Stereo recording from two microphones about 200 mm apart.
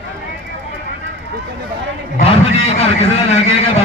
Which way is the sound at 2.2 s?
30° left (ahead or behind).